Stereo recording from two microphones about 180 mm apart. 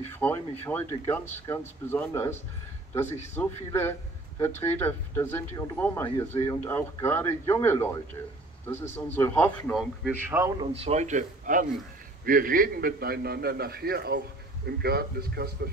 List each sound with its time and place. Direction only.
0.1 s speech: 10° left (ahead or behind)
10.2 s a man's voice: 10° right (ahead or behind)
10.6 s a man's voice: 35° right (ahead or behind); by 15.7 s 60° right (ahead or behind)